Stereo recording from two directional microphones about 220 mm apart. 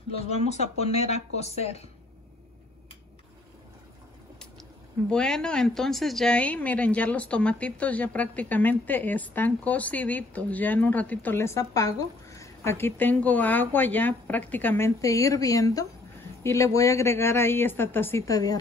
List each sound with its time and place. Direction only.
0.8 s speech: 30° left (ahead or behind)
5.1 s a woman's voice: 5° left (ahead or behind)